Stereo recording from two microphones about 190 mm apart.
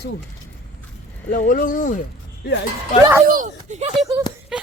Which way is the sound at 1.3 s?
45° left (ahead or behind).